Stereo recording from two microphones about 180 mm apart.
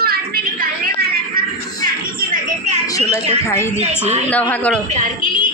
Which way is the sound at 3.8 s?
35° right (ahead or behind).